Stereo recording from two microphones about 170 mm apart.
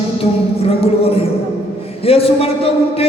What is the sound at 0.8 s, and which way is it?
A man's voice, 35° left (ahead or behind).